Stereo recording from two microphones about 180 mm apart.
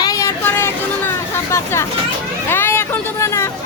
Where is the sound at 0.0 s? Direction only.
20° left (ahead or behind).